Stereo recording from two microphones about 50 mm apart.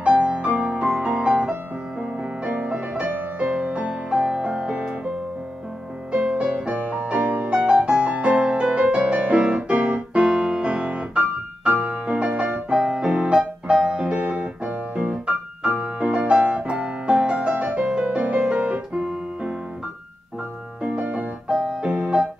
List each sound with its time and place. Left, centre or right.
0.2 s music: right
6.1 s music: right
7.4 s music: centre
9.8 s keyboard: right
10.3 s music: centre
21.0 s piano: right
21.6 s music: right